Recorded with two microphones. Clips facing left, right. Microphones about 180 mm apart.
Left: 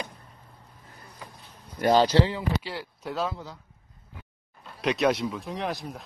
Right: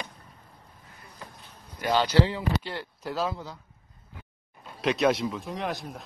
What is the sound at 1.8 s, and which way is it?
Speech, 40° left (ahead or behind).